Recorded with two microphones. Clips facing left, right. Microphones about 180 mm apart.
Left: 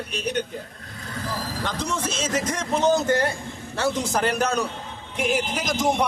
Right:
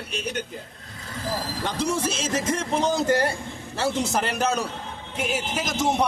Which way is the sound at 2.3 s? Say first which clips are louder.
Even; 25° right (ahead or behind).